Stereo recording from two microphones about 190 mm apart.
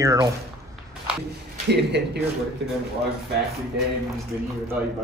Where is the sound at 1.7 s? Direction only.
60° right (ahead or behind).